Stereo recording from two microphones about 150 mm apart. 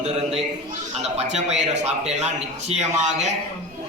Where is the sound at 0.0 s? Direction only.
45° right (ahead or behind).